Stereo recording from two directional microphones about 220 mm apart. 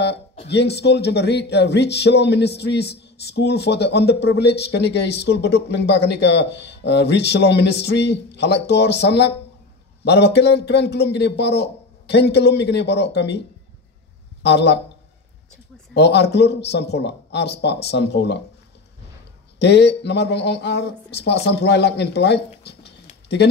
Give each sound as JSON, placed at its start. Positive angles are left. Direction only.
{"t": 0.5, "sound": "speech", "side_deg": 50}
{"t": 14.4, "sound": "speech", "side_deg": 50}
{"t": 15.9, "sound": "speech", "side_deg": 50}
{"t": 19.6, "sound": "speech", "side_deg": 50}